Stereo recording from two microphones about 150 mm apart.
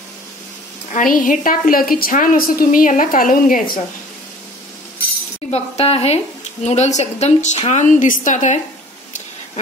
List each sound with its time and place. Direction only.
0.9 s a woman's voice: 65° left (ahead or behind)
5.5 s a woman's voice: 40° left (ahead or behind)